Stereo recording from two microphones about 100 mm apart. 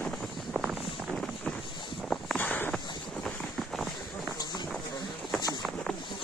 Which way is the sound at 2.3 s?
20° left (ahead or behind).